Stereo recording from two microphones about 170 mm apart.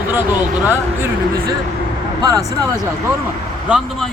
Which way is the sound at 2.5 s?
15° left (ahead or behind).